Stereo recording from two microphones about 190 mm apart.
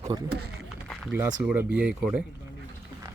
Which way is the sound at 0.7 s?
Centre (ahead or behind).